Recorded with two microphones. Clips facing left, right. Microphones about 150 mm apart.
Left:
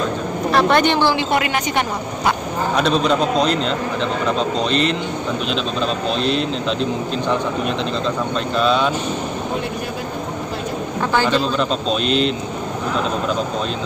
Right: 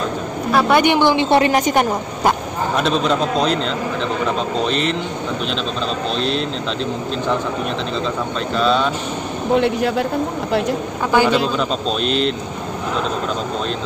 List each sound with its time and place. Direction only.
0.5 s speech: 5° right (ahead or behind)
1.3 s a woman's voice: 30° right (ahead or behind)
1.7 s a woman's voice: 45° right (ahead or behind)
2.8 s speech: centre (ahead or behind)
4.6 s speech: centre (ahead or behind)
8.5 s speech: centre (ahead or behind)
11.1 s speech: 10° right (ahead or behind)